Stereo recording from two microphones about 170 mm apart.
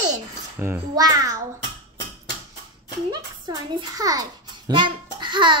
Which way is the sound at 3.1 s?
25° right (ahead or behind).